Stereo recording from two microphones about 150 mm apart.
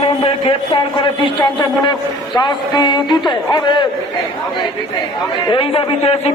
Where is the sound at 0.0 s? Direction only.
35° left (ahead or behind).